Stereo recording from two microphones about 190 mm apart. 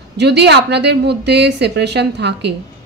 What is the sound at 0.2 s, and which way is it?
A woman's voice, 60° right (ahead or behind).